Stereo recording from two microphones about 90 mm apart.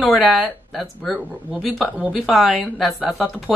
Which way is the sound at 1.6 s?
5° right (ahead or behind).